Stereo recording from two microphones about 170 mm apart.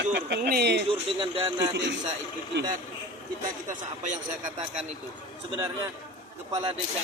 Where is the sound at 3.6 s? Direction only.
45° right (ahead or behind).